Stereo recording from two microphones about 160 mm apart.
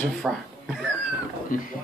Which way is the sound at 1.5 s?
60° left (ahead or behind).